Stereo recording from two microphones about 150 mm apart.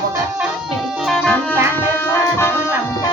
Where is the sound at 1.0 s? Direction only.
5° left (ahead or behind).